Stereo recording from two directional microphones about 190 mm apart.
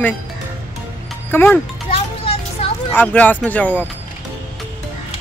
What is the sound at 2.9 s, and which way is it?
Speech, 10° left (ahead or behind).